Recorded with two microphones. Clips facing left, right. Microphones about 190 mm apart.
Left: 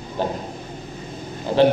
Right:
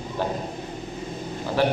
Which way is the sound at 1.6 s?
20° left (ahead or behind).